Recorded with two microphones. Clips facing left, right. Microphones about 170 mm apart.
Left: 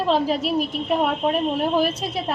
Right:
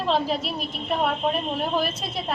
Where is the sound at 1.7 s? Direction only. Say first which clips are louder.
Left 5 dB; 10° left (ahead or behind).